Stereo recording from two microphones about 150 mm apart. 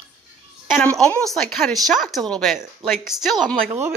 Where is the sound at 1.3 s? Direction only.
5° left (ahead or behind).